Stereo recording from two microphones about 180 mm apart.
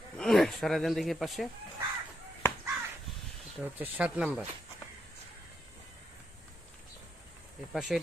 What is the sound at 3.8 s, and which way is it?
Speech, 5° right (ahead or behind).